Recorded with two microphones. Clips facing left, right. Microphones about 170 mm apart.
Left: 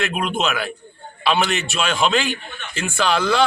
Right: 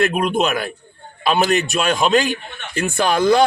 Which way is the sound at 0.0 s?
40° right (ahead or behind).